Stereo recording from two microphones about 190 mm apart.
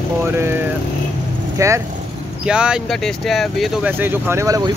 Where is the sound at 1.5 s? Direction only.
15° right (ahead or behind).